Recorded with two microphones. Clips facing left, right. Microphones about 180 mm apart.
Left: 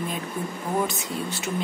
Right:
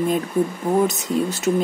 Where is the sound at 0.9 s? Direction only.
45° right (ahead or behind).